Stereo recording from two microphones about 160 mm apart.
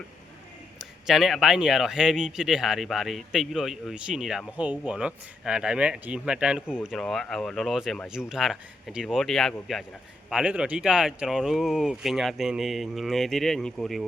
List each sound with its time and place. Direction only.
0.8 s speech: centre (ahead or behind)